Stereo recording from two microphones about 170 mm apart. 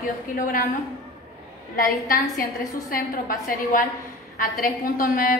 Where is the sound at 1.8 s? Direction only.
55° left (ahead or behind).